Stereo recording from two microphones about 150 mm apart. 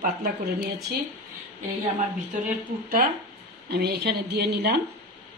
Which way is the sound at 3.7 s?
90° right.